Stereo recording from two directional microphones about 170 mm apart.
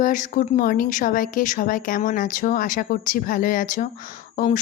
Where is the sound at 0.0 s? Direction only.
50° left (ahead or behind).